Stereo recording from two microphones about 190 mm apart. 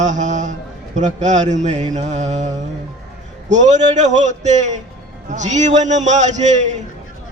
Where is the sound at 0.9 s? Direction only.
40° right (ahead or behind).